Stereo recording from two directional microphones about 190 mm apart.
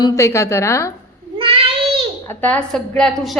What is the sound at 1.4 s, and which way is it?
Child singing, 30° right (ahead or behind).